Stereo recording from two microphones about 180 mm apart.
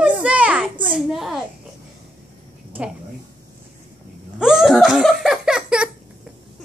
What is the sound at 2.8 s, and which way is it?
Speech, 5° right (ahead or behind).